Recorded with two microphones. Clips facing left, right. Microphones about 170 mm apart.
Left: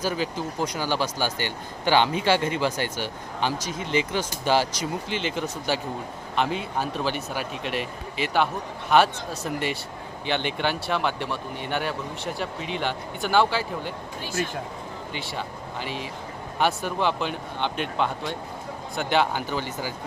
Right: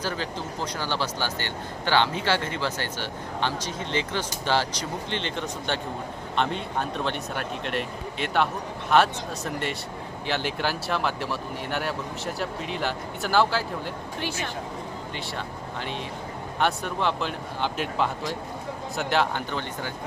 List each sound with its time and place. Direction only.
0.0 s speech: 10° left (ahead or behind)
15.1 s speech: centre (ahead or behind)